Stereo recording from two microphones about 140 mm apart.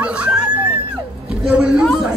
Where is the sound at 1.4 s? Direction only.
10° right (ahead or behind).